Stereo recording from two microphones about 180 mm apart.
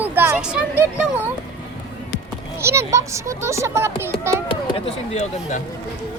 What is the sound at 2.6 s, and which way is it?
A child's voice, 15° right (ahead or behind).